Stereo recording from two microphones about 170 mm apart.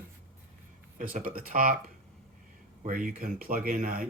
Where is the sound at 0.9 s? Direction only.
55° right (ahead or behind).